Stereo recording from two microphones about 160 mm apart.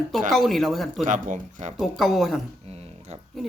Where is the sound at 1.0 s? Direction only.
50° right (ahead or behind).